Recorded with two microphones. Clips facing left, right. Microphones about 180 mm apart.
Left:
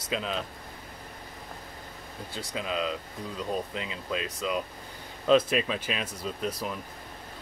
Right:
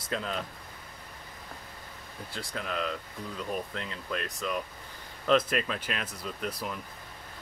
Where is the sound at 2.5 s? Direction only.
15° left (ahead or behind).